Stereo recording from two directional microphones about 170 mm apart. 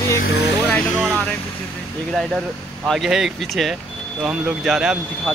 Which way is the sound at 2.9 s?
Centre (ahead or behind).